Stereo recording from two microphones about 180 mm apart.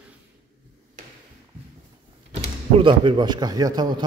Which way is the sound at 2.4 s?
30° right (ahead or behind).